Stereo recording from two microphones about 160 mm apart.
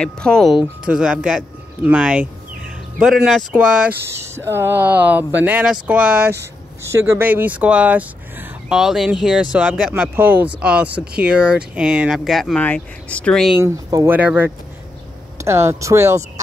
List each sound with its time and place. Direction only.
0.0 s speech: 5° left (ahead or behind)
13.6 s speech: 20° right (ahead or behind)